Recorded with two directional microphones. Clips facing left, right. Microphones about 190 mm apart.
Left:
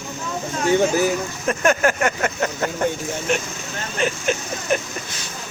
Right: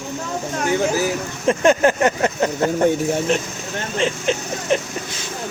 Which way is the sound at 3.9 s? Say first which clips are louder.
Right 1 dB; 25° right (ahead or behind).